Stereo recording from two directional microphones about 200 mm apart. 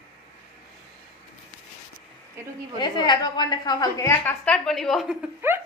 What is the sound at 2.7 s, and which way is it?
A woman's voice, 20° left (ahead or behind).